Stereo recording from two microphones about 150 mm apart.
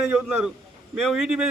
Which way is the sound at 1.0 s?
5° right (ahead or behind).